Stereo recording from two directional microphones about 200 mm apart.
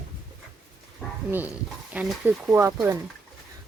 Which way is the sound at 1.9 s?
5° right (ahead or behind).